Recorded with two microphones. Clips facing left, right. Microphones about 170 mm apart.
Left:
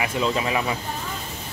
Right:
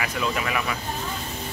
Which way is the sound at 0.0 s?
25° left (ahead or behind).